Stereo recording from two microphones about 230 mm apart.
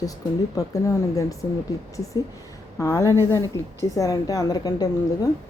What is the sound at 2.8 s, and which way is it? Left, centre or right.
A woman's voice, centre.